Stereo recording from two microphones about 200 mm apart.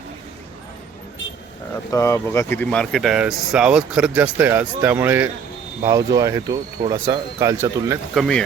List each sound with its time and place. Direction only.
1.9 s speech: 15° left (ahead or behind); by 7.9 s 15° right (ahead or behind)
8.1 s speech: centre (ahead or behind)